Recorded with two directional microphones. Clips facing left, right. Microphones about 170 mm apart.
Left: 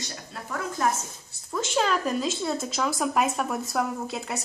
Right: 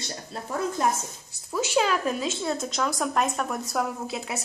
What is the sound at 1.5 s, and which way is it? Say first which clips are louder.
A woman's voice: right 1 dB; 5° right (ahead or behind).